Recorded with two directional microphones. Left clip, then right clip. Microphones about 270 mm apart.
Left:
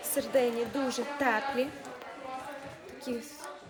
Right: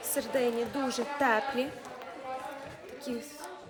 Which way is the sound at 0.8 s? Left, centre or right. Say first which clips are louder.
Right 3 dB; centre.